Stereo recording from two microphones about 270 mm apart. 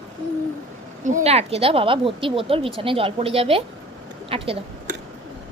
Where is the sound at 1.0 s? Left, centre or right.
Right.